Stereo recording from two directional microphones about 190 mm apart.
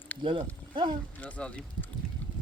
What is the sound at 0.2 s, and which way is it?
Speech, 25° right (ahead or behind).